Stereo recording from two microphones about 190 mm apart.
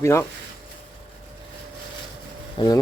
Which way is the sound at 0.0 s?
15° left (ahead or behind).